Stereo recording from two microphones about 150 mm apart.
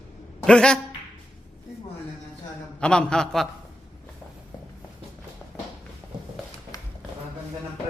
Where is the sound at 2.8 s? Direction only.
5° left (ahead or behind).